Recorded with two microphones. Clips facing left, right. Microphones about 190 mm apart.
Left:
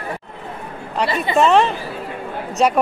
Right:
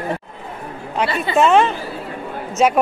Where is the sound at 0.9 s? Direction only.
Centre (ahead or behind).